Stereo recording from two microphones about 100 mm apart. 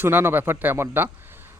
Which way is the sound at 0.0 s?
20° right (ahead or behind).